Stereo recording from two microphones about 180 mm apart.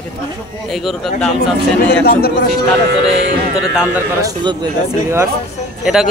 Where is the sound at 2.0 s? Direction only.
55° left (ahead or behind).